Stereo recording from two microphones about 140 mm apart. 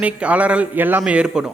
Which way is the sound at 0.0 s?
10° right (ahead or behind).